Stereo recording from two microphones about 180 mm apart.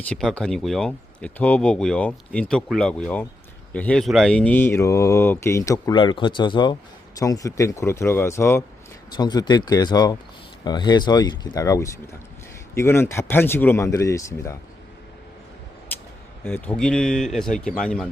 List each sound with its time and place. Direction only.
0.0 s speech: 5° left (ahead or behind)
15.9 s a sound: 10° left (ahead or behind)
16.4 s speech: 10° left (ahead or behind)